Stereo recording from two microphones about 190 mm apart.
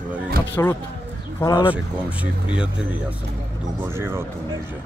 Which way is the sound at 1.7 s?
5° right (ahead or behind).